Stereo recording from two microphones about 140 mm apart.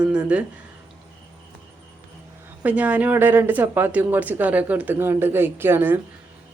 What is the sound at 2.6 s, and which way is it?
A woman's voice, 10° right (ahead or behind).